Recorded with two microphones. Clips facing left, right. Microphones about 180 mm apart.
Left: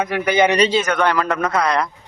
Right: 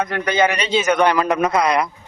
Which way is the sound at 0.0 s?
10° left (ahead or behind).